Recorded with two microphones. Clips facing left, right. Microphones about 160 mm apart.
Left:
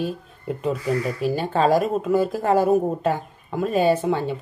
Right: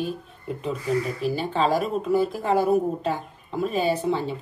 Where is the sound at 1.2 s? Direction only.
45° left (ahead or behind).